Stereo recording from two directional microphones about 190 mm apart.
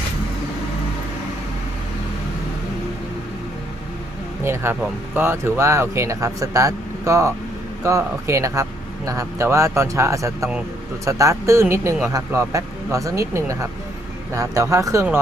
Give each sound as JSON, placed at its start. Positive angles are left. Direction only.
{"t": 4.4, "sound": "speech", "side_deg": -15}